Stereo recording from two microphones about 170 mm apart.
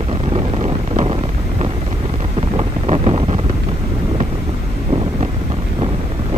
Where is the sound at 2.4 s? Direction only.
35° right (ahead or behind).